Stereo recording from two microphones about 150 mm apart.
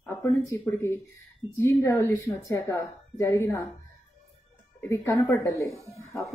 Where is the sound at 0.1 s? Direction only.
20° left (ahead or behind).